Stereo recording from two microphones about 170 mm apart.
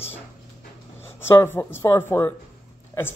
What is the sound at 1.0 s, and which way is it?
Speech, 15° left (ahead or behind).